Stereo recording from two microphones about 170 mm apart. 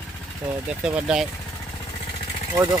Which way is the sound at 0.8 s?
5° right (ahead or behind).